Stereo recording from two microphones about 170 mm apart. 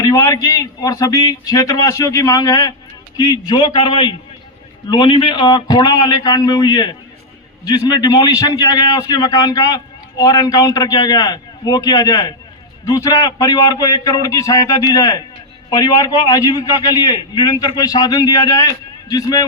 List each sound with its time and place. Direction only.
0.0 s a man's voice: 20° left (ahead or behind)